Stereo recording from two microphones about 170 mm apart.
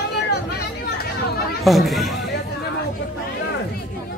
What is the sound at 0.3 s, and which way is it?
Chatter, 75° left (ahead or behind).